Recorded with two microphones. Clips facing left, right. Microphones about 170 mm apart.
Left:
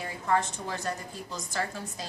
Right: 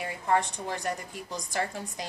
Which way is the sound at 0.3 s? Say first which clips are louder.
Right 1 dB; 15° right (ahead or behind).